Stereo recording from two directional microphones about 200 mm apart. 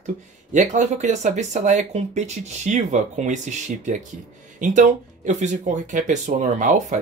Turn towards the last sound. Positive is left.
turn(degrees=-40)  # may be behind; listen again after turning